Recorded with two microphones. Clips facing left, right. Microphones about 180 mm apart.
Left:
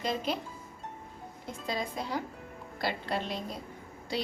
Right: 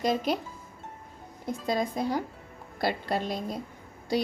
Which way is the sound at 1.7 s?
50° right (ahead or behind).